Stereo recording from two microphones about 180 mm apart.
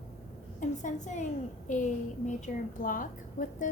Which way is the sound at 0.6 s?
45° left (ahead or behind).